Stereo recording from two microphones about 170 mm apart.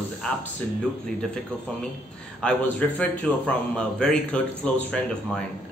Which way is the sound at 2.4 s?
5° left (ahead or behind).